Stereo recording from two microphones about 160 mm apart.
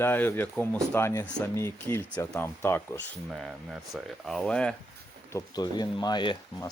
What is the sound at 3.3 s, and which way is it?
Speech, centre (ahead or behind).